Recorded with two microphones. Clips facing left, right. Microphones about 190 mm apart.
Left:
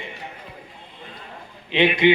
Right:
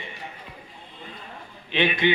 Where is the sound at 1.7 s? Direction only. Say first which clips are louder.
Left 5 dB; 20° left (ahead or behind).